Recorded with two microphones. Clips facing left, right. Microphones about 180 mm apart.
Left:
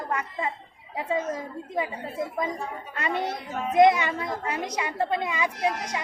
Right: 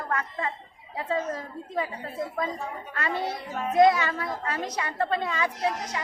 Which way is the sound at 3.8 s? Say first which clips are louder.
Left 1 dB; 20° left (ahead or behind).